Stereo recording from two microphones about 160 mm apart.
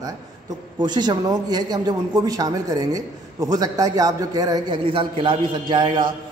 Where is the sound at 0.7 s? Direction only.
25° right (ahead or behind).